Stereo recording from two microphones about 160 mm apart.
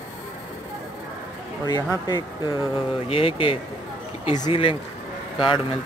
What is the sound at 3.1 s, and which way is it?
A man's voice, 35° left (ahead or behind).